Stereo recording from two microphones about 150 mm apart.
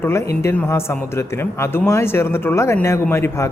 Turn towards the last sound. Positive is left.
turn(degrees=15)  # may be behind; listen again after turning